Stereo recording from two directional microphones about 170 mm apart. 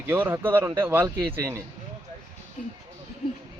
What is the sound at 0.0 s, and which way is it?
Speech, 10° right (ahead or behind).